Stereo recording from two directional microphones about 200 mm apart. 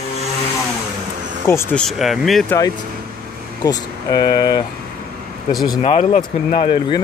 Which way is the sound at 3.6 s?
20° left (ahead or behind).